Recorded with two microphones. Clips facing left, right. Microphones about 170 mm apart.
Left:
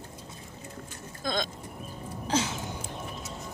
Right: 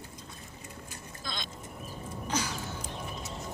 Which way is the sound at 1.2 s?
45° left (ahead or behind).